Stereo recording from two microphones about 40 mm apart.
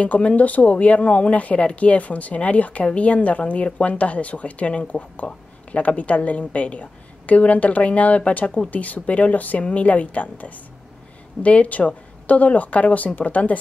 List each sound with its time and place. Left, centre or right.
0.0 s speech: left